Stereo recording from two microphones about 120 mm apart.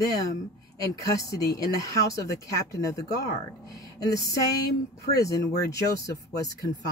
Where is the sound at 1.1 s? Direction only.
30° left (ahead or behind).